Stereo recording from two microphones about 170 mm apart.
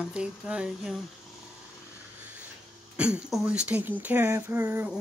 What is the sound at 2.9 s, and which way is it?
Speech, 5° right (ahead or behind).